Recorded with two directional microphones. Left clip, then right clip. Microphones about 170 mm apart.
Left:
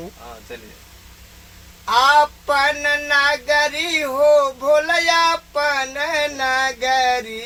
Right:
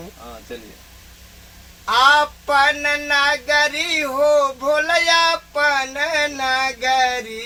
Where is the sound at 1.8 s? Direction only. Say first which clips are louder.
Even; 15° left (ahead or behind).